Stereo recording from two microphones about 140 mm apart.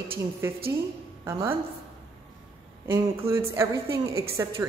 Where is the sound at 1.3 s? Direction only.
20° right (ahead or behind).